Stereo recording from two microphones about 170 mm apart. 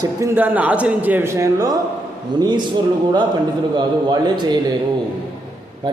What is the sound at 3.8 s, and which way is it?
Speech, 25° right (ahead or behind).